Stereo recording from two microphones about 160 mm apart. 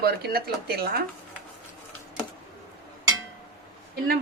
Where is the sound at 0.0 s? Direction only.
75° right (ahead or behind).